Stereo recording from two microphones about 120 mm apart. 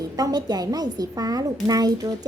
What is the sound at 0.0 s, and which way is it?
A woman's voice, 30° right (ahead or behind).